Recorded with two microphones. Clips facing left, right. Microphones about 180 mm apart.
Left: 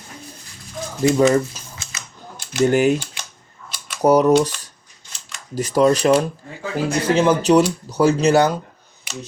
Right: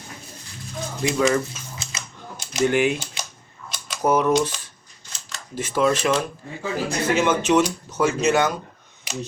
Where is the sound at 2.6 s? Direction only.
40° left (ahead or behind).